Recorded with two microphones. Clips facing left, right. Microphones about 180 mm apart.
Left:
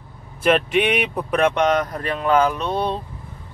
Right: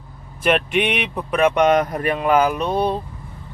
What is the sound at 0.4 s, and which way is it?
Speech, centre (ahead or behind).